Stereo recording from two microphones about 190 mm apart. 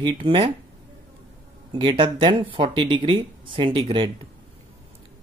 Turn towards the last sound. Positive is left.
turn(degrees=-25)  # may be behind; listen again after turning